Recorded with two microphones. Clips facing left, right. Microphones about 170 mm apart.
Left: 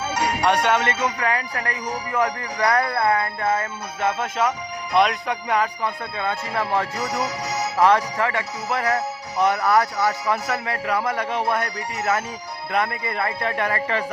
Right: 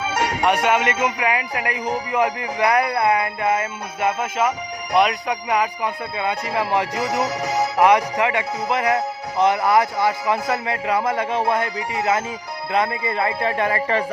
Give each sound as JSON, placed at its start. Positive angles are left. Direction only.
{"t": 0.4, "sound": "a man's voice", "side_deg": -5}
{"t": 12.7, "sound": "a man's voice", "side_deg": -25}